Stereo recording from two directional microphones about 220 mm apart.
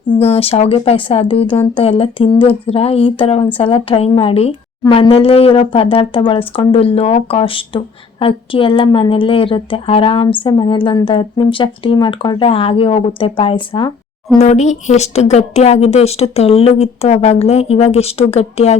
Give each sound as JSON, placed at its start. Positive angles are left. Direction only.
{"t": 0.1, "sound": "a woman's voice", "side_deg": 25}